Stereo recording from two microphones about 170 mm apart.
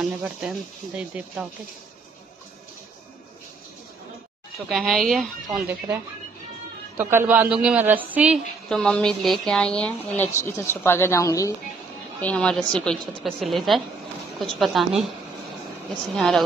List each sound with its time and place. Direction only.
0.0 s a woman's voice: 5° right (ahead or behind)
4.6 s a woman's voice: centre (ahead or behind)
7.0 s a woman's voice: 15° right (ahead or behind)
8.6 s a woman's voice: 5° left (ahead or behind)
12.2 s a woman's voice: 5° left (ahead or behind)
16.2 s a woman's voice: centre (ahead or behind)